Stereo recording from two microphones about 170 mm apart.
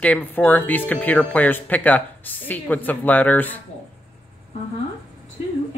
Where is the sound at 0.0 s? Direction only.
10° left (ahead or behind).